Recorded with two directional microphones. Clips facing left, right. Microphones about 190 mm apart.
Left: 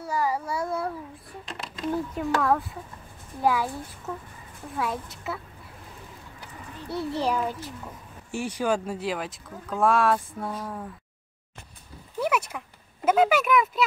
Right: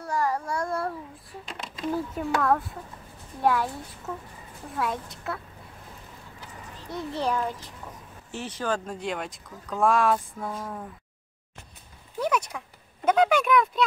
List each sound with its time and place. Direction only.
0.0 s speech: 5° left (ahead or behind)
4.7 s speech: centre (ahead or behind)
6.9 s a child's voice: 5° left (ahead or behind)
12.2 s speech: 5° left (ahead or behind)